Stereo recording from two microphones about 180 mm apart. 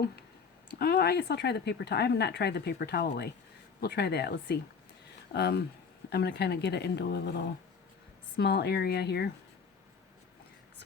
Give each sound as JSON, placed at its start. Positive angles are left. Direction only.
{"t": 0.8, "sound": "speech", "side_deg": 60}